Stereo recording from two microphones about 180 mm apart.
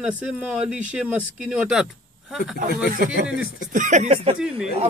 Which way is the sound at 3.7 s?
45° right (ahead or behind).